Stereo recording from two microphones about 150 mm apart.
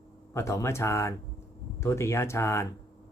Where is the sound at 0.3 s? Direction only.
20° left (ahead or behind).